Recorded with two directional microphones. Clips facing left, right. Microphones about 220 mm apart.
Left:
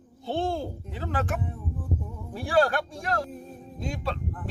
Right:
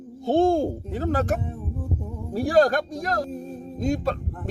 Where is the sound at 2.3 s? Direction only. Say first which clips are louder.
Right 5 dB; 40° right (ahead or behind).